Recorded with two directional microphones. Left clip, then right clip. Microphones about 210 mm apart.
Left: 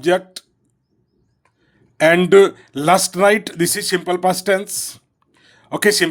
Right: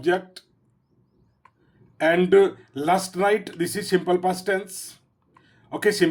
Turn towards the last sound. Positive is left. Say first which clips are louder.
# left 6 dB
turn(degrees=35)  # may be behind; listen again after turning